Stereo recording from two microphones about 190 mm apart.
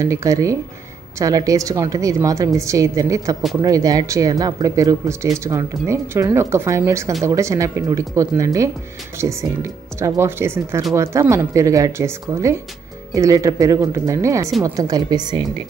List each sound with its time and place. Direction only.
0.0 s a woman's voice: 15° right (ahead or behind)